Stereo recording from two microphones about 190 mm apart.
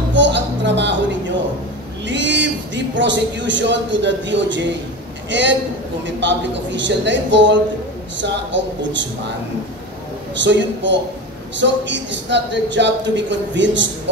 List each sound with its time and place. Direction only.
0.1 s a sound: 70° right (ahead or behind)
2.0 s a man's voice: 70° right (ahead or behind)
10.4 s speech: 70° right (ahead or behind)